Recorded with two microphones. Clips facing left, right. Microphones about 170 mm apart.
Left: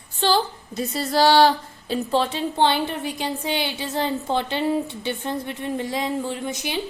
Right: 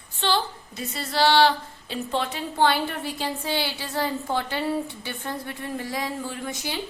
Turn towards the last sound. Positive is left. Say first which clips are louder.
# left 4 dB
turn(degrees=20)  # may be behind; listen again after turning